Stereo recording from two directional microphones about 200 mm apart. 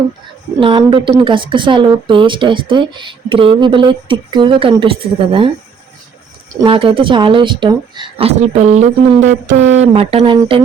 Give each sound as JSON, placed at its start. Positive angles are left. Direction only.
{"t": 0.6, "sound": "speech", "side_deg": -25}
{"t": 6.5, "sound": "speech", "side_deg": -20}